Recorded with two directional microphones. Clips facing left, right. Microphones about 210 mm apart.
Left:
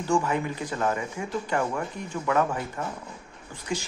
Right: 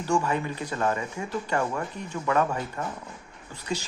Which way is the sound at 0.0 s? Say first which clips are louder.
Left 1 dB; 15° left (ahead or behind).